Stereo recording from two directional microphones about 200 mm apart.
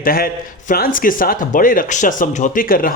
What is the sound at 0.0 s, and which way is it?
A man's voice, 45° left (ahead or behind).